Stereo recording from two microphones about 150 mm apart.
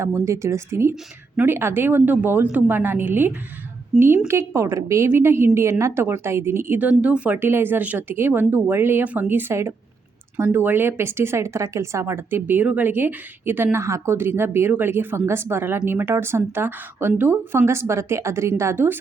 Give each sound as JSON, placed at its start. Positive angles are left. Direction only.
{"t": 0.0, "sound": "speech", "side_deg": -20}
{"t": 3.9, "sound": "a woman's voice", "side_deg": 0}
{"t": 4.3, "sound": "speech", "side_deg": -20}